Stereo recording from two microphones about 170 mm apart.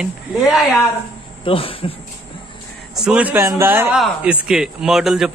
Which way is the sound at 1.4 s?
30° left (ahead or behind).